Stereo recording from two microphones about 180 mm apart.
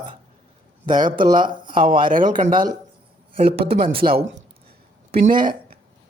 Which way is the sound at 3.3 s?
30° right (ahead or behind).